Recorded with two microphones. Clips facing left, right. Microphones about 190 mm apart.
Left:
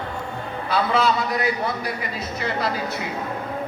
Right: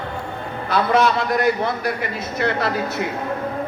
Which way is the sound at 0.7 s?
50° right (ahead or behind).